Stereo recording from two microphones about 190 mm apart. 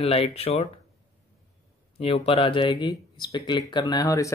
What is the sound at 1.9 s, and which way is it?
Speech, 30° left (ahead or behind).